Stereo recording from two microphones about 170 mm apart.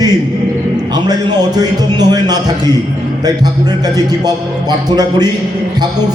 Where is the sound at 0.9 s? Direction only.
25° right (ahead or behind).